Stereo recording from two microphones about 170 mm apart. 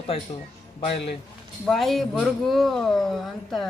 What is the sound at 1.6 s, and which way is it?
Speech, centre (ahead or behind).